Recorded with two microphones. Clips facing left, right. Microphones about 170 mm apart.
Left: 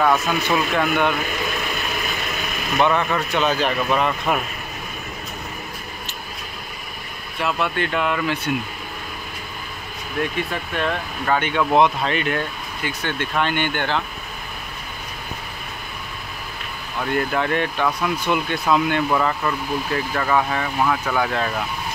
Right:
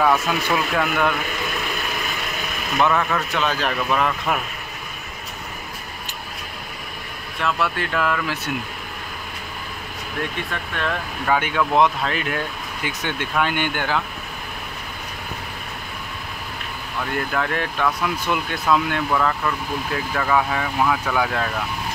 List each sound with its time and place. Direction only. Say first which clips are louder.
0.0 s speech: even; 5° right (ahead or behind)
2.8 s speech: left 1 dB; centre (ahead or behind)
7.4 s speech: left 1 dB; centre (ahead or behind)
10.5 s speech: left 2 dB; 5° left (ahead or behind)
12.8 s speech: left 1 dB; 15° right (ahead or behind)
17.3 s speech: left 3 dB; centre (ahead or behind)
20.2 s speech: right 1 dB; centre (ahead or behind)